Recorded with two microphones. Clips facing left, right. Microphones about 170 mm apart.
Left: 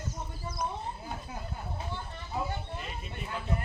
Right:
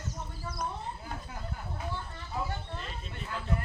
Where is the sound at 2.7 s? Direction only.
15° left (ahead or behind).